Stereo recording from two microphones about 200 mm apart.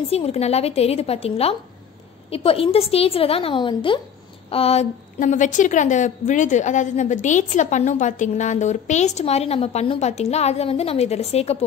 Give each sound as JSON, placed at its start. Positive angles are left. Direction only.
{"t": 0.1, "sound": "a woman's voice", "side_deg": 30}